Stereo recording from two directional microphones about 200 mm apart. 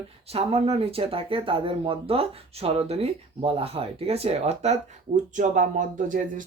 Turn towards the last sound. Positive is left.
turn(degrees=-40)  # may be behind; listen again after turning